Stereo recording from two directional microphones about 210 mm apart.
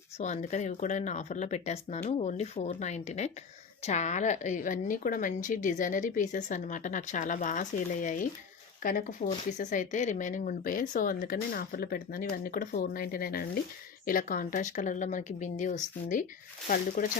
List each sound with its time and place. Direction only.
0.2 s speech: 35° left (ahead or behind)